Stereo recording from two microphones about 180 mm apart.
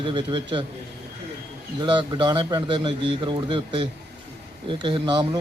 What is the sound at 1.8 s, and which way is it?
A man's voice, 25° right (ahead or behind).